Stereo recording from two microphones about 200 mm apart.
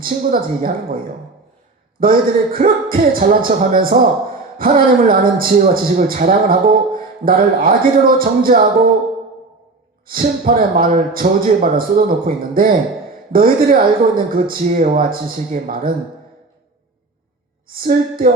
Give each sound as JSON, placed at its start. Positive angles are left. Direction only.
{"t": 0.0, "sound": "a man's voice", "side_deg": -45}
{"t": 2.0, "sound": "a man's voice", "side_deg": -45}
{"t": 10.1, "sound": "a man's voice", "side_deg": -45}
{"t": 17.7, "sound": "a man's voice", "side_deg": -45}